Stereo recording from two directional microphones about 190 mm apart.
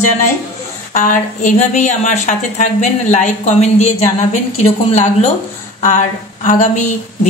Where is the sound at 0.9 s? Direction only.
40° left (ahead or behind).